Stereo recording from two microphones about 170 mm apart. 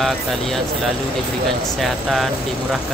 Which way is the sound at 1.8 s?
Centre (ahead or behind).